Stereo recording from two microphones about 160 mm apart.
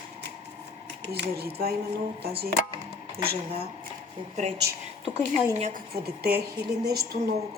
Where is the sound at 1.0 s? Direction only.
90° right.